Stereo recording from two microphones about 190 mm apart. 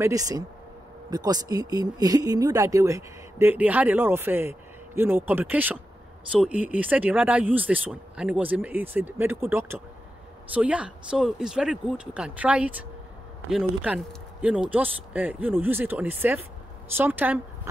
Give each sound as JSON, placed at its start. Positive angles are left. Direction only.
{"t": 0.0, "sound": "speech", "side_deg": -20}